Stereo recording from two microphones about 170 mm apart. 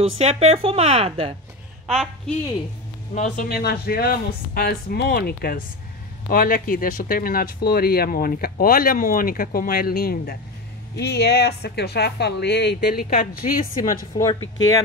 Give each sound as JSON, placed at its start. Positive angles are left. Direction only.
{"t": 0.0, "sound": "speech", "side_deg": -40}
{"t": 1.9, "sound": "a woman's voice", "side_deg": 0}
{"t": 3.2, "sound": "speech", "side_deg": 60}
{"t": 11.0, "sound": "speech", "side_deg": 75}